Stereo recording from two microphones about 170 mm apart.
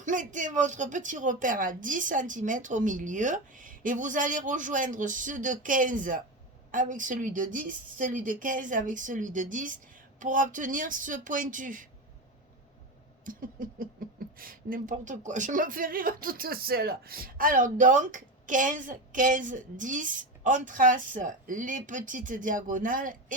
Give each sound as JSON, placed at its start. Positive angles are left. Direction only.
{"t": 0.0, "sound": "speech", "side_deg": -50}
{"t": 13.2, "sound": "a sound", "side_deg": -55}
{"t": 14.3, "sound": "speech", "side_deg": -55}